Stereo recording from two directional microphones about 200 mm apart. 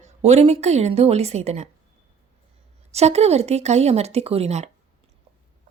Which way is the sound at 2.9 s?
35° right (ahead or behind).